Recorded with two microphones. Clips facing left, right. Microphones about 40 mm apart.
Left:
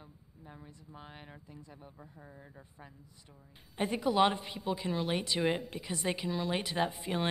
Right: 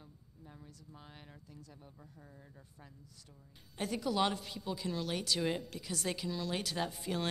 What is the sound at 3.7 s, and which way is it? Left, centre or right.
A woman's voice, left.